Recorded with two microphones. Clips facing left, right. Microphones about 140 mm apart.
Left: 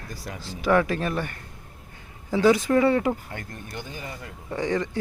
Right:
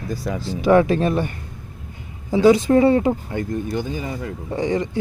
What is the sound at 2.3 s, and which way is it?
Speech, 20° right (ahead or behind).